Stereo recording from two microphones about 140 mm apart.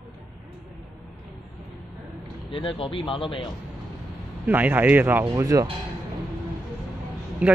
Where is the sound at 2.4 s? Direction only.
35° left (ahead or behind).